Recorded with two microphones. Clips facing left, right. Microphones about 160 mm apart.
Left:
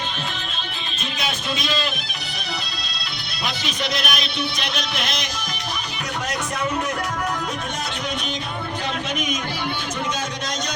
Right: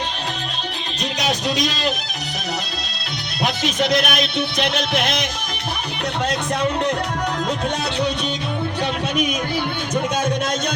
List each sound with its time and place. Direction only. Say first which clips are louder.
1.2 s speech: right 6 dB; 40° right (ahead or behind)
3.4 s speech: right 7 dB; 45° right (ahead or behind)